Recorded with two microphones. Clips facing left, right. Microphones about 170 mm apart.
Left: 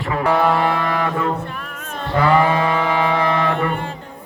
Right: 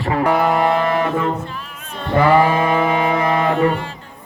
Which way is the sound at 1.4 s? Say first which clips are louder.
Left 1 dB; 60° left (ahead or behind).